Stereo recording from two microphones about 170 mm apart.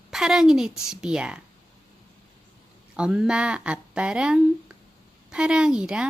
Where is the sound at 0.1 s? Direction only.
5° right (ahead or behind).